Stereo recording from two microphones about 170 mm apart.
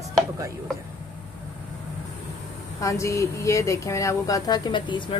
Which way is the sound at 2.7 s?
20° left (ahead or behind).